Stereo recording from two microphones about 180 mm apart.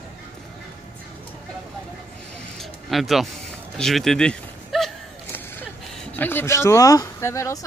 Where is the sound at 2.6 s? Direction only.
Centre (ahead or behind).